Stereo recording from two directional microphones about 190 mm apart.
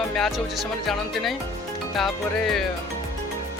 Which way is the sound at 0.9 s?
Centre (ahead or behind).